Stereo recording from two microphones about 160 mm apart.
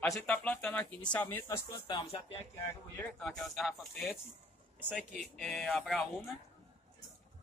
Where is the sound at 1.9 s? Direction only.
30° left (ahead or behind).